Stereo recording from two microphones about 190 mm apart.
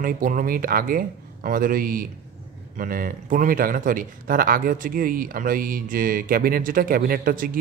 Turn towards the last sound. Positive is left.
turn(degrees=-50)  # may be behind; listen again after turning